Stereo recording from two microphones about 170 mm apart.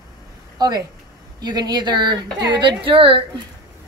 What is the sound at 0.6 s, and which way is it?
Speech, 25° right (ahead or behind).